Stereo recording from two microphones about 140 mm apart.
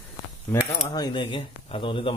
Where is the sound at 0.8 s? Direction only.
30° left (ahead or behind).